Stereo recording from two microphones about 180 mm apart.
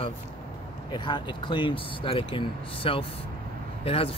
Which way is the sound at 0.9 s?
25° left (ahead or behind).